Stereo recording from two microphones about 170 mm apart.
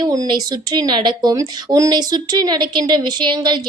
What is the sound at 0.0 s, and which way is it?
A woman's voice, 25° right (ahead or behind).